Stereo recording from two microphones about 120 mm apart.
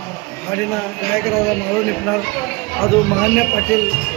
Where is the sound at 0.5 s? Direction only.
5° left (ahead or behind).